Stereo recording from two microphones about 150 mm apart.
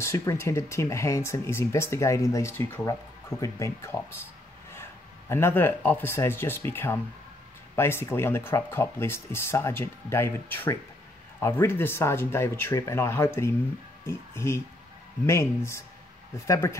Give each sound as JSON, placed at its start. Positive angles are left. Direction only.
{"t": 0.0, "sound": "speech", "side_deg": 20}
{"t": 5.3, "sound": "speech", "side_deg": 15}